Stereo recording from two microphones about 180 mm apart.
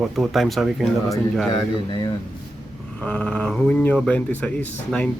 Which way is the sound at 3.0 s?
5° left (ahead or behind).